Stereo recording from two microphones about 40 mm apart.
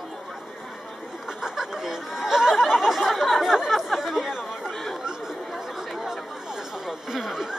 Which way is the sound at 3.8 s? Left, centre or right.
Centre.